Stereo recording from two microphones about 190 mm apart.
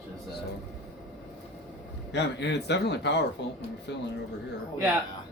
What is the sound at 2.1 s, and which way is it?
Speech, 65° left (ahead or behind).